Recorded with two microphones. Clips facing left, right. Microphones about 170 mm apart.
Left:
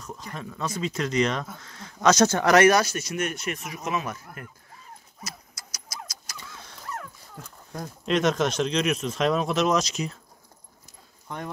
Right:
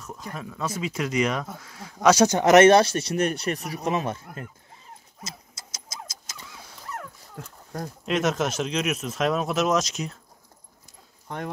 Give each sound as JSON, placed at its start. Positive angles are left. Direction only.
{"t": 0.0, "sound": "speech", "side_deg": -5}
{"t": 5.2, "sound": "vehicle", "side_deg": -25}
{"t": 6.5, "sound": "dog", "side_deg": -10}
{"t": 8.0, "sound": "speech", "side_deg": -5}